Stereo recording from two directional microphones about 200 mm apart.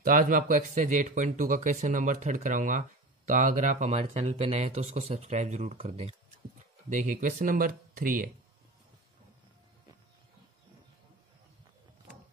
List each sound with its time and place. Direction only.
0.0 s speech: 45° right (ahead or behind)